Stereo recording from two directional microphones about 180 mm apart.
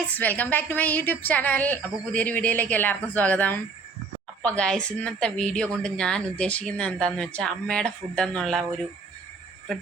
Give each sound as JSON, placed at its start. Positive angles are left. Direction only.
{"t": 0.2, "sound": "a woman's voice", "side_deg": 10}